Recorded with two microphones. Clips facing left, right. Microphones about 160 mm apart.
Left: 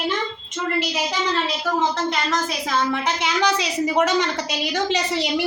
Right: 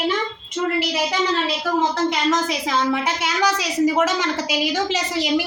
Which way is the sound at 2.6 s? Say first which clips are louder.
Right 1 dB; 15° right (ahead or behind).